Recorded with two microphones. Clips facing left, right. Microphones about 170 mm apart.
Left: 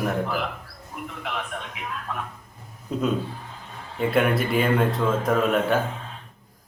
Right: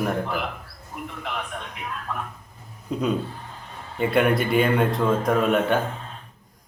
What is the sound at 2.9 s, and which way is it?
Speech, centre (ahead or behind).